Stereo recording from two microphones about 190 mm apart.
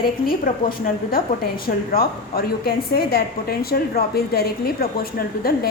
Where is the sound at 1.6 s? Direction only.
50° left (ahead or behind).